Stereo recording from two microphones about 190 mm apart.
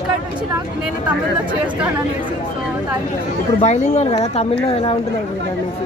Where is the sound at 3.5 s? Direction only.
35° left (ahead or behind).